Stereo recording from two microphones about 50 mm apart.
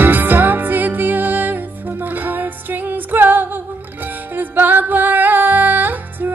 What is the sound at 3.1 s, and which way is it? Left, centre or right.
Music, right.